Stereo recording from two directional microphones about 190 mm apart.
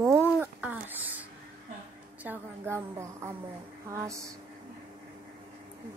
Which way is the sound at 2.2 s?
10° right (ahead or behind).